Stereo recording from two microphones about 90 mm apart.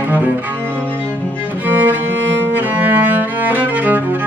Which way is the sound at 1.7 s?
20° right (ahead or behind).